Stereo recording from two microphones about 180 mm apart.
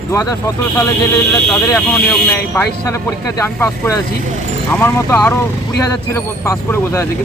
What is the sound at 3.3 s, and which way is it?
Speech, 15° left (ahead or behind).